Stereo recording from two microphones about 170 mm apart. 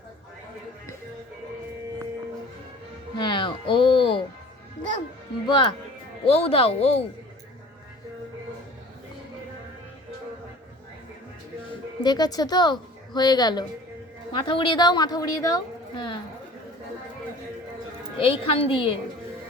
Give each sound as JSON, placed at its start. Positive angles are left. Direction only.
{"t": 3.2, "sound": "music", "side_deg": 30}
{"t": 5.5, "sound": "a woman's voice", "side_deg": 30}
{"t": 12.0, "sound": "a woman's voice", "side_deg": 25}
{"t": 18.2, "sound": "a woman's voice", "side_deg": 30}